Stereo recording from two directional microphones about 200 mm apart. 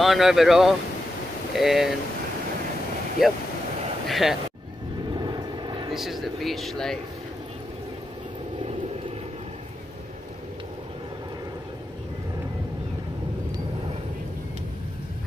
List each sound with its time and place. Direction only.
0.0 s speech: centre (ahead or behind)
3.2 s speech: centre (ahead or behind)
5.1 s vehicle: 20° right (ahead or behind)
5.9 s speech: centre (ahead or behind)